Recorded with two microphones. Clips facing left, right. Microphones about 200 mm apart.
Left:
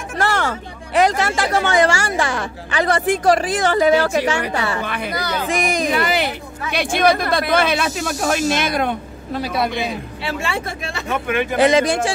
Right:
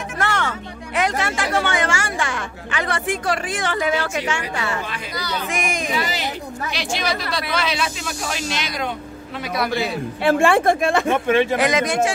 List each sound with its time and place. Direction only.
0.2 s speech: 35° left (ahead or behind)
4.8 s a woman's voice: 60° left (ahead or behind)
5.5 s speech: 35° left (ahead or behind)
5.9 s a woman's voice: 60° left (ahead or behind)
9.3 s a man's voice: 30° left (ahead or behind)
10.2 s speech: 50° right (ahead or behind)
11.1 s speech: 30° right (ahead or behind)
11.5 s speech: 30° left (ahead or behind)